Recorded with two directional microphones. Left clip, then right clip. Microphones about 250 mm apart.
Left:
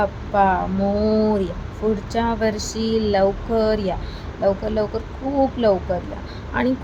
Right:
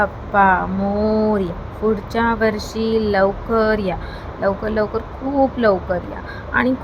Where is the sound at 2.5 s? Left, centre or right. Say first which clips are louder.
Right 3 dB; centre.